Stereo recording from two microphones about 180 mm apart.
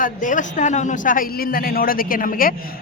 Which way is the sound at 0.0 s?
45° left (ahead or behind).